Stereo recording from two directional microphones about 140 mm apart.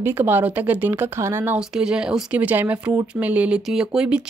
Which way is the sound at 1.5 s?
5° right (ahead or behind).